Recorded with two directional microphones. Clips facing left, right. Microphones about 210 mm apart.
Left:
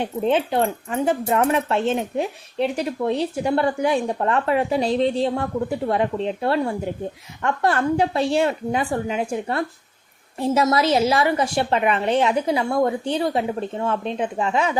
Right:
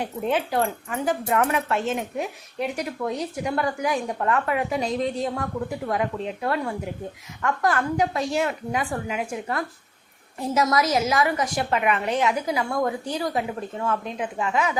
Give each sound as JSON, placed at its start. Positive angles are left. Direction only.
{"t": 0.0, "sound": "speech", "side_deg": 25}